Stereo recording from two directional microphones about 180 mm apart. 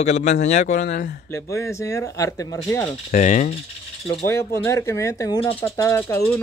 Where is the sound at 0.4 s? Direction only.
40° left (ahead or behind).